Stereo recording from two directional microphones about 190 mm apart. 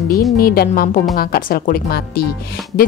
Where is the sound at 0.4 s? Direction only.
50° left (ahead or behind).